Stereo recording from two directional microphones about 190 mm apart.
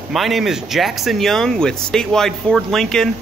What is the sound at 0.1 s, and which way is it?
Speech, centre (ahead or behind).